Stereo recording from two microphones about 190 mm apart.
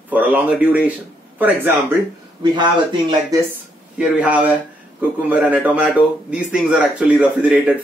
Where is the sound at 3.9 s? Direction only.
5° right (ahead or behind).